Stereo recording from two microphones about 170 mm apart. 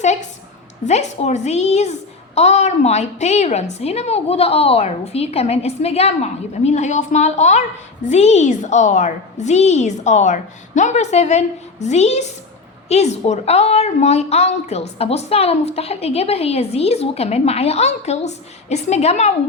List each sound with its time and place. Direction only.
0.0 s a woman's voice: 40° left (ahead or behind)